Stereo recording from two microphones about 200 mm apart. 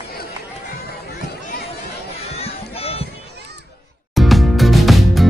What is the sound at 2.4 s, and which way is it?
Music, 30° left (ahead or behind).